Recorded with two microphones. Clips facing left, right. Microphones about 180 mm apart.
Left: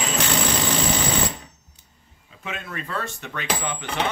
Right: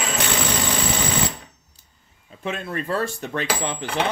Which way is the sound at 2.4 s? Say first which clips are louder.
Right 6 dB; 35° right (ahead or behind).